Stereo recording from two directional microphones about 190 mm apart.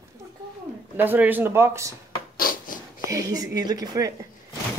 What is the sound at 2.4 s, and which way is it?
Writing, 50° left (ahead or behind).